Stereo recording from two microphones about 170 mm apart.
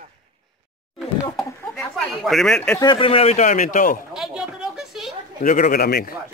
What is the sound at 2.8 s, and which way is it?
Speech, 30° left (ahead or behind).